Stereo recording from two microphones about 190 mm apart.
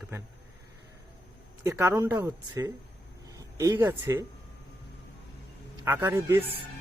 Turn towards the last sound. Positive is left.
turn(degrees=-15)  # may be behind; listen again after turning